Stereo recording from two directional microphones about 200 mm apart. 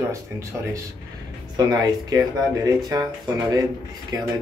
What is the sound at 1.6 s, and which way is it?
Speech, 20° right (ahead or behind).